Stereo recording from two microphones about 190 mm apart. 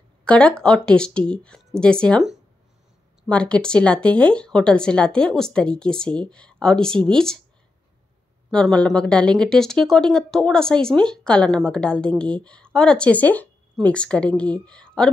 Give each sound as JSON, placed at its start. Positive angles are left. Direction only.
{"t": 0.2, "sound": "speech", "side_deg": 5}
{"t": 8.5, "sound": "speech", "side_deg": 5}